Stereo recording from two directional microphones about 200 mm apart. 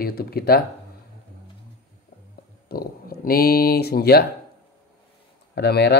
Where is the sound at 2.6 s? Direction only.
50° left (ahead or behind).